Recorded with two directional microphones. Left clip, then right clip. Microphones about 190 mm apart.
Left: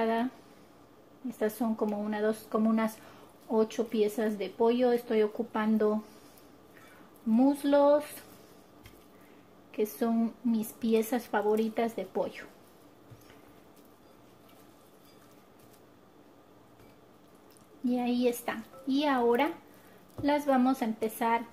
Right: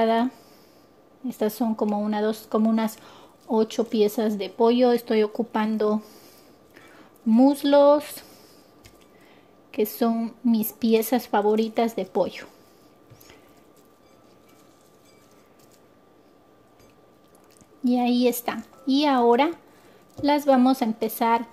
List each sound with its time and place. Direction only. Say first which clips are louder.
0.0 s speech: right 8 dB; 45° right (ahead or behind)
7.2 s speech: right 7 dB; 45° right (ahead or behind)
9.7 s speech: right 7 dB; 45° right (ahead or behind)
17.8 s speech: right 7 dB; 50° right (ahead or behind)